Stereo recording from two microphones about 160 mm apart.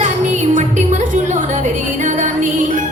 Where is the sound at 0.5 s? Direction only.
50° right (ahead or behind).